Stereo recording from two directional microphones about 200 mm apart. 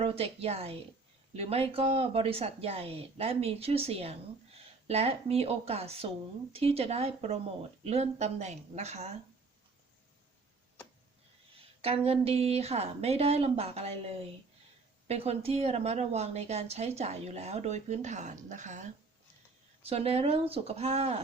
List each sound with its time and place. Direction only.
0.0 s speech: 30° right (ahead or behind)
11.8 s speech: 30° right (ahead or behind)
15.0 s speech: 30° right (ahead or behind)
19.9 s speech: 30° right (ahead or behind)